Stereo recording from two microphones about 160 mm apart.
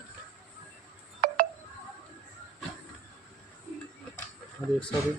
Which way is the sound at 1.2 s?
55° right (ahead or behind).